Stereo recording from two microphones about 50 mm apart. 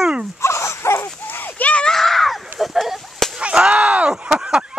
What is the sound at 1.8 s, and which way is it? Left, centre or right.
Whip, centre.